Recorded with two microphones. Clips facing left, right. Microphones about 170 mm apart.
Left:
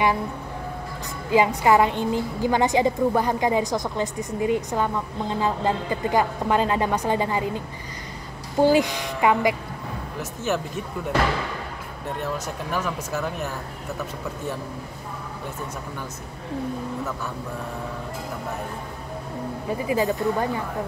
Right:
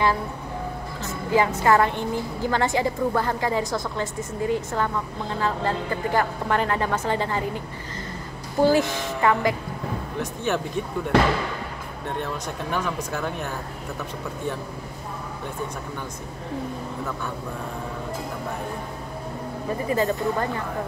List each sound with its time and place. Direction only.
1.3 s a woman's voice: 15° left (ahead or behind)
8.5 s a woman's voice: 15° left (ahead or behind)
10.5 s speech: 5° left (ahead or behind)
12.7 s speech: 5° left (ahead or behind)
19.9 s a woman's voice: 10° left (ahead or behind)